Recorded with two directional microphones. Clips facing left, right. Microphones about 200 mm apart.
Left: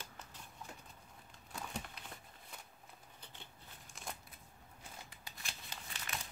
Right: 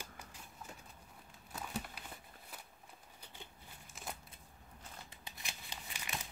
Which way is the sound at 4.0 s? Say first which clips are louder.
Right 1 dB; 5° right (ahead or behind).